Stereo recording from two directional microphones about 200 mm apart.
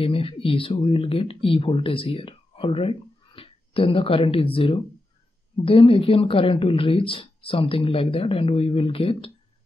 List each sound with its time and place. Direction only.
0.0 s speech: 30° left (ahead or behind)